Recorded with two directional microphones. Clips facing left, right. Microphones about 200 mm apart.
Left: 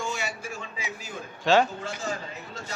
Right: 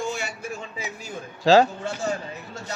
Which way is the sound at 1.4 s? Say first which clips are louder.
Right 5 dB; 35° right (ahead or behind).